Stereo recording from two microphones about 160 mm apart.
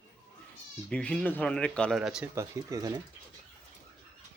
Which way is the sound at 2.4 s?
20° right (ahead or behind).